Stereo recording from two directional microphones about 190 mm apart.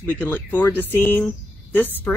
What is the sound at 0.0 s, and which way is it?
A woman's voice, 10° left (ahead or behind).